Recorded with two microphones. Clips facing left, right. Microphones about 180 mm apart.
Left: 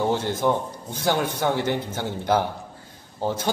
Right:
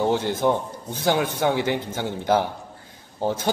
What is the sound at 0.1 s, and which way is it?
A man's voice, 10° right (ahead or behind).